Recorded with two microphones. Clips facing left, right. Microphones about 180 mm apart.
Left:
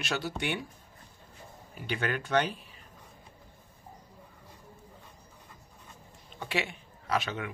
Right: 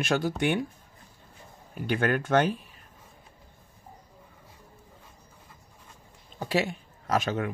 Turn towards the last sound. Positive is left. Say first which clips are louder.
# right 5 dB
turn(degrees=-45)  # may be behind; listen again after turning